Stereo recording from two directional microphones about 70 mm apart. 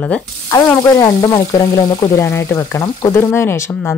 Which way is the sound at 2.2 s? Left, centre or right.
Left.